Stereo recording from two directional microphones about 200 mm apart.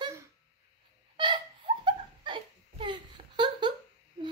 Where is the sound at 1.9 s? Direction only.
25° right (ahead or behind).